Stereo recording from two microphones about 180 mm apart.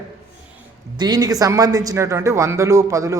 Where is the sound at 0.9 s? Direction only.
20° right (ahead or behind).